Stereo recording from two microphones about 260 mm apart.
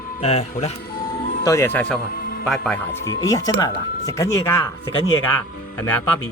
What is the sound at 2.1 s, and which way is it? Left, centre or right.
Music, left.